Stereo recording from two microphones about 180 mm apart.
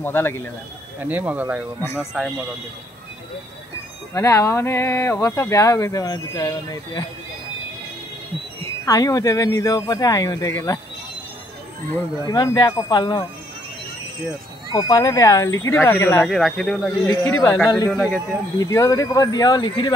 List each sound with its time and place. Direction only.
0.0 s speech: 10° left (ahead or behind)
1.0 s speech: 10° right (ahead or behind)
4.1 s speech: 15° left (ahead or behind)
8.6 s speech: 20° left (ahead or behind)
11.9 s speech: 20° left (ahead or behind)
14.7 s speech: 20° left (ahead or behind); by 16.8 s 5° left (ahead or behind)
17.2 s speech: 15° left (ahead or behind)